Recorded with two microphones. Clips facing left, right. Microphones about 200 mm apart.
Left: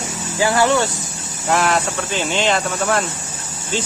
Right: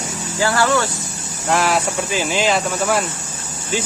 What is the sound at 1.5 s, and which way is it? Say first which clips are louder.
Speech: even; centre (ahead or behind).